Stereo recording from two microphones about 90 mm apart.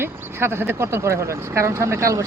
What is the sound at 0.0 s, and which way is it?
Speech, 25° right (ahead or behind).